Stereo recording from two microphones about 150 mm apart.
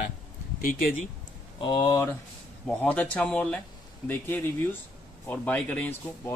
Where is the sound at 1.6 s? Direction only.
25° left (ahead or behind).